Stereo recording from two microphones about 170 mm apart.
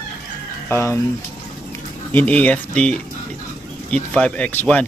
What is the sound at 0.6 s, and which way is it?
Speech, 15° left (ahead or behind).